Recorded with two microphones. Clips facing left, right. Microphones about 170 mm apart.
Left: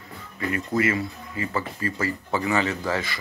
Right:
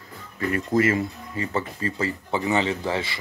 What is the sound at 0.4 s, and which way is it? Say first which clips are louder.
Speech: right 3 dB; 40° right (ahead or behind).